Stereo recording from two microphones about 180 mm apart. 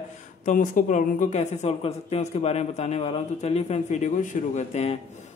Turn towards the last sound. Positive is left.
turn(degrees=40)  # may be behind; listen again after turning